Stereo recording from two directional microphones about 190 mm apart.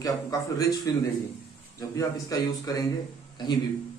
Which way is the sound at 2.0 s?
20° left (ahead or behind).